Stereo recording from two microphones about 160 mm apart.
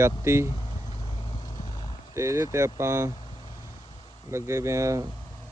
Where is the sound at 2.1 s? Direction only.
20° right (ahead or behind).